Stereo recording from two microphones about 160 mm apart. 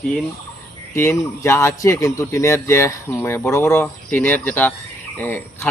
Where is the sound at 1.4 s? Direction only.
15° left (ahead or behind).